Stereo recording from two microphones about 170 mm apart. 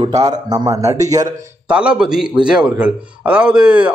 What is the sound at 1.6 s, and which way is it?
A man's voice, 5° right (ahead or behind).